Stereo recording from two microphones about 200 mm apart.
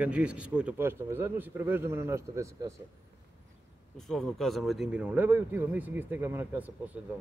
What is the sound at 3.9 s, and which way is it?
A man's voice, centre (ahead or behind).